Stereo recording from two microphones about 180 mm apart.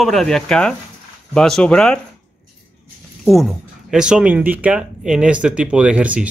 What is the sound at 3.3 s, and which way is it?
Speech, centre (ahead or behind).